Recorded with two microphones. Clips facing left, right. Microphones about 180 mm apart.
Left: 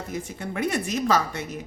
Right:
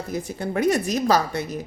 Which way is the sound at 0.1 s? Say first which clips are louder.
Right 6 dB; 35° right (ahead or behind).